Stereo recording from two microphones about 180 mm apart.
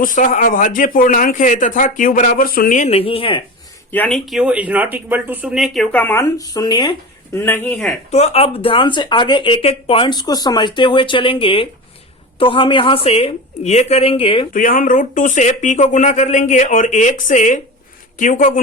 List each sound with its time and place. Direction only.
0.0 s speech: 50° left (ahead or behind); by 3.4 s 30° left (ahead or behind)
3.9 s speech: 5° left (ahead or behind); by 6.9 s 25° left (ahead or behind)
7.3 s speech: 10° left (ahead or behind)
8.1 s a woman's voice: 35° left (ahead or behind)
14.5 s speech: 50° left (ahead or behind)